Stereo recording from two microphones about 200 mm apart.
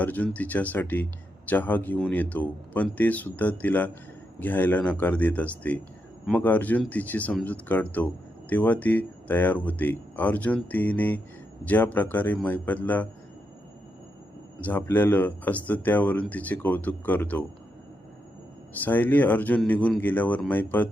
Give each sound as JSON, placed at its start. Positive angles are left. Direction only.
{"t": 0.0, "sound": "speech", "side_deg": 10}
{"t": 14.6, "sound": "speech", "side_deg": 10}
{"t": 18.9, "sound": "speech", "side_deg": 10}